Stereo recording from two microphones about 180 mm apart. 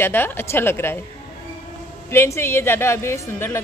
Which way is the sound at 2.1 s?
15° left (ahead or behind).